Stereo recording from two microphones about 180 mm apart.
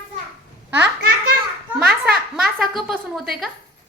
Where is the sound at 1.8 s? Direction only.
60° right (ahead or behind).